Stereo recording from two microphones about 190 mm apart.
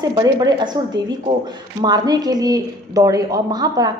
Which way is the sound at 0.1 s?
20° right (ahead or behind).